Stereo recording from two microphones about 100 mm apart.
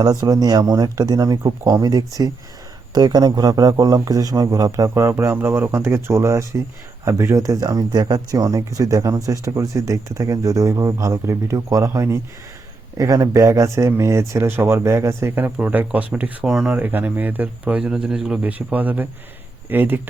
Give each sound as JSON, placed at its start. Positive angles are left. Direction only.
{"t": 0.0, "sound": "speech", "side_deg": -40}
{"t": 16.7, "sound": "speech", "side_deg": -15}